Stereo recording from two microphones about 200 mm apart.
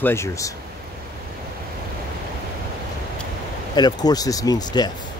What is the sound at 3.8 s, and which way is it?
Speech, 20° left (ahead or behind).